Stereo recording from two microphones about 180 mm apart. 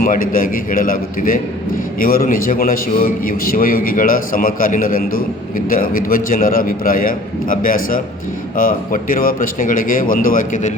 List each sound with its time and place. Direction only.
0.0 s a man's voice: 50° left (ahead or behind)